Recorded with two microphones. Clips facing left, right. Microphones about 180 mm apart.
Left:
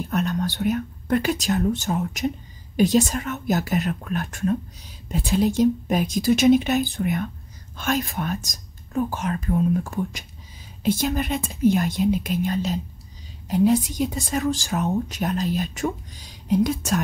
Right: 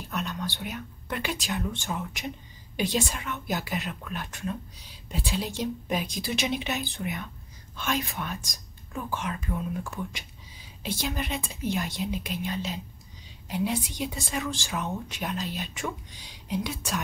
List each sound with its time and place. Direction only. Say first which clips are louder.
0.1 s a woman's voice: left 7 dB; 50° left (ahead or behind)